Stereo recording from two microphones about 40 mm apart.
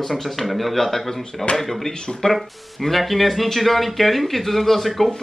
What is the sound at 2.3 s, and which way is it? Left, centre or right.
Speech, centre.